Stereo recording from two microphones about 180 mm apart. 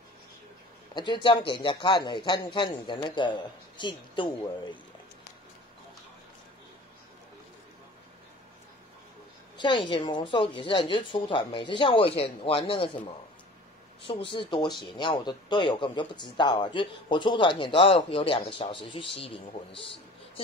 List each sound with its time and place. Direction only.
0.9 s a man's voice: 25° left (ahead or behind)
9.6 s a man's voice: 25° left (ahead or behind)
14.0 s a man's voice: 30° left (ahead or behind)